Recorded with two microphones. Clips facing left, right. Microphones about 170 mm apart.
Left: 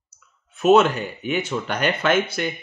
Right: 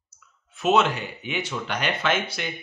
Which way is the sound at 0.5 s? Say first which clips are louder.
Left 6 dB; 50° left (ahead or behind).